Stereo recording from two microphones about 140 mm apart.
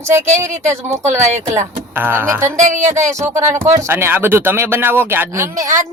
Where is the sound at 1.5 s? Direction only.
20° right (ahead or behind).